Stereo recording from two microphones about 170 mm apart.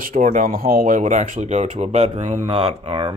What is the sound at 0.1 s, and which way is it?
Speech, 50° right (ahead or behind).